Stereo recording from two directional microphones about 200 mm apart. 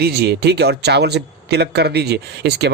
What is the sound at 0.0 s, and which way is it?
Speech, 55° right (ahead or behind).